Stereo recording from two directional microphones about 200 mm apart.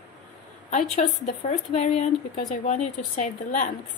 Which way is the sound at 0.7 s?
35° left (ahead or behind).